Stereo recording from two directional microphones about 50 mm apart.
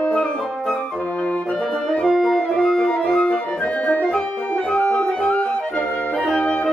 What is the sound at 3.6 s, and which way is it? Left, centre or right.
Music, left.